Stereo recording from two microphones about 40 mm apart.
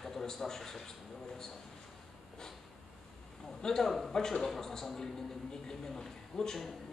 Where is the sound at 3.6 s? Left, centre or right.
Centre.